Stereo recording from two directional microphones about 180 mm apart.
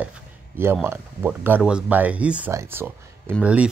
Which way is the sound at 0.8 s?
10° right (ahead or behind).